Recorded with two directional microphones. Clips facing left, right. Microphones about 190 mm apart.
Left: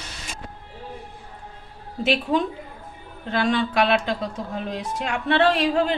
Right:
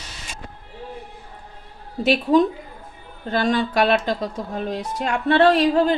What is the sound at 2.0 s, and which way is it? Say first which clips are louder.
Speech: right 5 dB; 40° right (ahead or behind).